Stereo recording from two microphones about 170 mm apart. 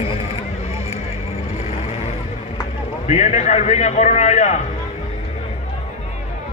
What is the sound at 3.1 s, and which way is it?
A man's voice, 40° left (ahead or behind).